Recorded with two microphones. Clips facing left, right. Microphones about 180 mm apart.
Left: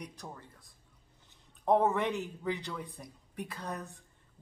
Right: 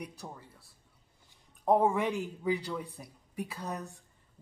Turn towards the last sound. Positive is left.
turn(degrees=-10)  # may be behind; listen again after turning